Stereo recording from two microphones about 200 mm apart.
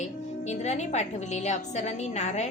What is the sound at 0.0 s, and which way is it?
A woman's voice, 35° left (ahead or behind).